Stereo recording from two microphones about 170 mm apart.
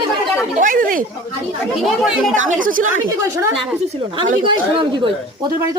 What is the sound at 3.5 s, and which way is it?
A woman's voice, 30° right (ahead or behind).